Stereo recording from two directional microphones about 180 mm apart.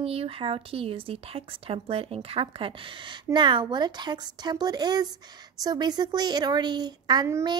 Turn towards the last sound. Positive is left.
turn(degrees=-20)  # may be behind; listen again after turning